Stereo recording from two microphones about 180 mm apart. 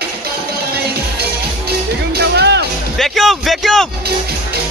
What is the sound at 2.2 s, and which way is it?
Music, 65° right (ahead or behind).